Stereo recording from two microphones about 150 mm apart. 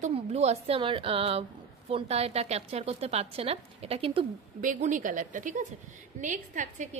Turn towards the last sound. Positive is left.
turn(degrees=-55)  # may be behind; listen again after turning